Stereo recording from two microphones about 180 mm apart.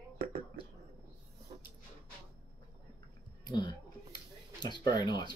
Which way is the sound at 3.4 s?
25° left (ahead or behind).